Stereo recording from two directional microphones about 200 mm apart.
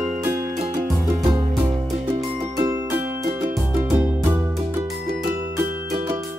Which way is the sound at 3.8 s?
10° right (ahead or behind).